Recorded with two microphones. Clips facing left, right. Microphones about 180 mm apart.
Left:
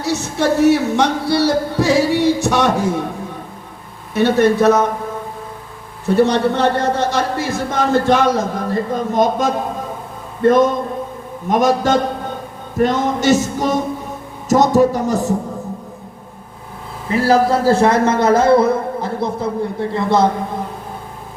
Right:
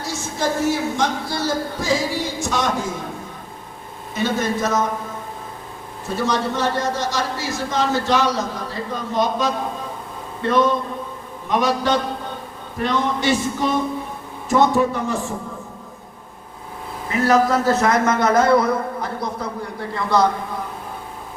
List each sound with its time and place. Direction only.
0.0 s speech: 70° left (ahead or behind)
4.1 s a man's voice: 65° left (ahead or behind)
6.1 s a man's voice: 60° left (ahead or behind)
10.4 s a sound: 45° left (ahead or behind)
14.5 s a man's voice: 40° left (ahead or behind)
17.1 s a man's voice: 30° left (ahead or behind)